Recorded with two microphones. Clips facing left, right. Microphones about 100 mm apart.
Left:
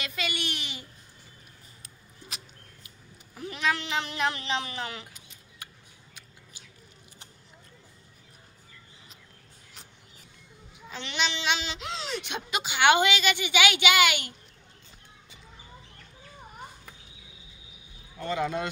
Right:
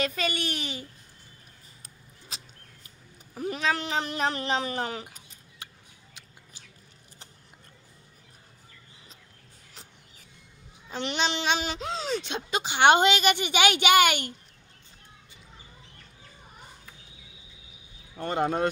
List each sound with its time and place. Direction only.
0.0 s a child's voice: 40° right (ahead or behind)
2.3 s a sound: 30° right (ahead or behind)
3.3 s speech: 40° right (ahead or behind)
10.9 s a child's voice: 40° right (ahead or behind)
13.1 s speech: 45° right (ahead or behind)
18.2 s speech: 45° right (ahead or behind)